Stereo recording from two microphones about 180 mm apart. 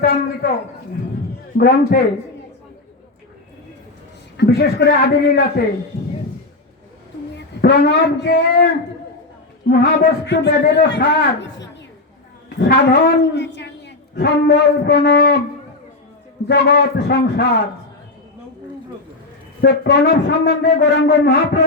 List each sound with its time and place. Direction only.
0.0 s a man's voice: 65° left (ahead or behind)
1.5 s a man's voice: 65° left (ahead or behind)
4.4 s a man's voice: 65° left (ahead or behind)
7.6 s a man's voice: 65° left (ahead or behind)
12.5 s a man's voice: 65° left (ahead or behind)
16.5 s a man's voice: 70° left (ahead or behind)
19.6 s a man's voice: 65° left (ahead or behind)